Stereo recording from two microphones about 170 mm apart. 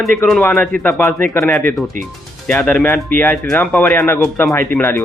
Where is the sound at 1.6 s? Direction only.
5° left (ahead or behind).